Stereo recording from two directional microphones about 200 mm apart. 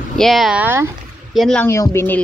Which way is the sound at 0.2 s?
Centre (ahead or behind).